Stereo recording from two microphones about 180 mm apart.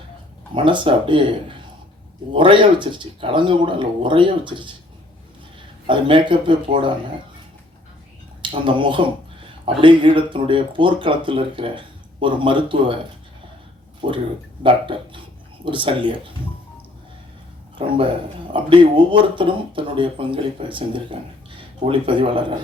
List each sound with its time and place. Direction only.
0.5 s speech: 30° right (ahead or behind)
5.9 s speech: 30° right (ahead or behind)
8.4 s speech: 30° right (ahead or behind)
14.0 s speech: 25° right (ahead or behind)
17.7 s speech: 30° right (ahead or behind)